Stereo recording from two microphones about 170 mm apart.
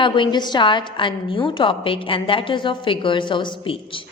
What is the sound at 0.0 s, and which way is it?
A woman's voice, 30° left (ahead or behind).